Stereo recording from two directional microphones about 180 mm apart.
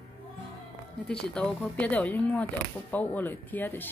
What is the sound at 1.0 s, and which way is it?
Speech, 5° left (ahead or behind).